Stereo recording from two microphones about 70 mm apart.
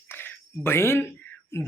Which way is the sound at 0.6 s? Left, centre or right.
Left.